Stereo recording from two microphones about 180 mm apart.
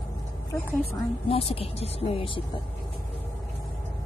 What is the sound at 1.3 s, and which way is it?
Speech, 35° left (ahead or behind).